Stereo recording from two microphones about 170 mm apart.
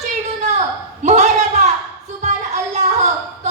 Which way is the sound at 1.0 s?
40° right (ahead or behind).